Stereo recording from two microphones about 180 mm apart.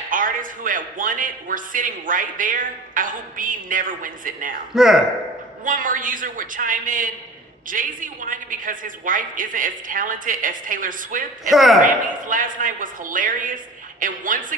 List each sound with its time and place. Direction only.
0.1 s a man's voice: 50° right (ahead or behind)
4.7 s a woman's voice: centre (ahead or behind)
5.7 s a man's voice: 50° right (ahead or behind)
11.5 s a woman's voice: centre (ahead or behind)
11.8 s a man's voice: 50° right (ahead or behind)